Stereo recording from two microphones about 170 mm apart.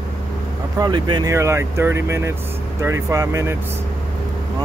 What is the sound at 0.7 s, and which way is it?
Speech, 25° right (ahead or behind).